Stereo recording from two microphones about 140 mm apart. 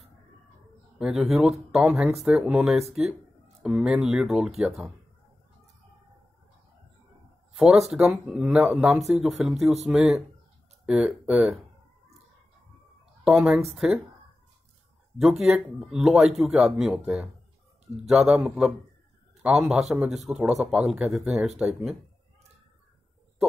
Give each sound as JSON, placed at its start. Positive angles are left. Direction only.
{"t": 0.9, "sound": "speech", "side_deg": -5}
{"t": 7.5, "sound": "speech", "side_deg": 0}
{"t": 13.2, "sound": "speech", "side_deg": -5}
{"t": 15.1, "sound": "speech", "side_deg": 0}